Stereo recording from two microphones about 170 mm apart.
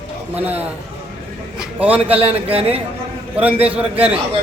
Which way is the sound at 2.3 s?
35° right (ahead or behind).